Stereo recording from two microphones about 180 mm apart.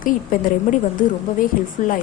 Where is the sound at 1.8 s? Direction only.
45° left (ahead or behind).